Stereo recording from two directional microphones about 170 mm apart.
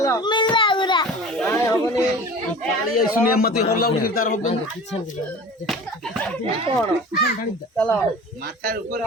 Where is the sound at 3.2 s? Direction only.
60° left (ahead or behind).